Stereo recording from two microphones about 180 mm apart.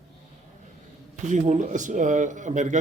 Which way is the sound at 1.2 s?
40° right (ahead or behind).